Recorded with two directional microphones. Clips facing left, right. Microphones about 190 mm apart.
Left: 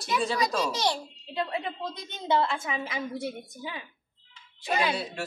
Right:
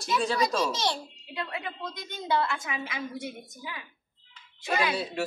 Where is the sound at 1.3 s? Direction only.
30° left (ahead or behind).